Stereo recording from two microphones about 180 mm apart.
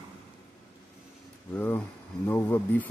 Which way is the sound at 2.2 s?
10° left (ahead or behind).